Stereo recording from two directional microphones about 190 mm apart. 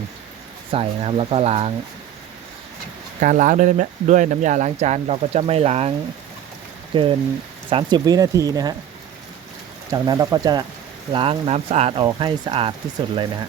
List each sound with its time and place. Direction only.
0.7 s speech: 30° right (ahead or behind)
3.2 s speech: 40° right (ahead or behind)
6.9 s speech: 25° right (ahead or behind)
9.9 s speech: 20° right (ahead or behind)